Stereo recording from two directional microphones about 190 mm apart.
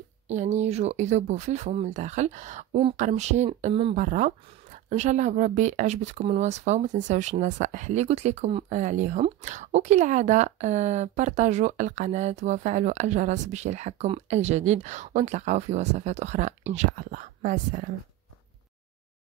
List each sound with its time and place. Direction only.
0.3 s speech: 40° right (ahead or behind)
3.9 s speech: 40° right (ahead or behind)